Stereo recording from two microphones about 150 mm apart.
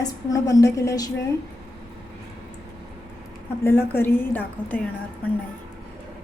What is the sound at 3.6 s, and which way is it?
A woman's voice, 15° left (ahead or behind).